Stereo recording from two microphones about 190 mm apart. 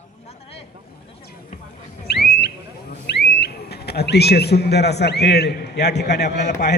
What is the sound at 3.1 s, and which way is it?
Speech, 60° left (ahead or behind).